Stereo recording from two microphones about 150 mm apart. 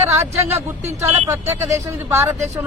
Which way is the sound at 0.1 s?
20° right (ahead or behind).